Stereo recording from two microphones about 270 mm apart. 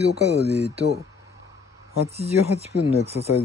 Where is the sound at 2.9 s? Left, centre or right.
Right.